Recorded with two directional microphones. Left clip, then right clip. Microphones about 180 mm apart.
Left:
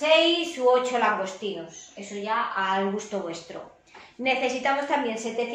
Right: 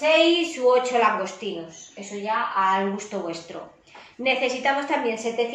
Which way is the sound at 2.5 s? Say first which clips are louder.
Right 4 dB; centre (ahead or behind).